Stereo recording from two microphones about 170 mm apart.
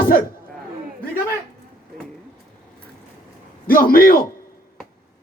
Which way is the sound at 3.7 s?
55° left (ahead or behind).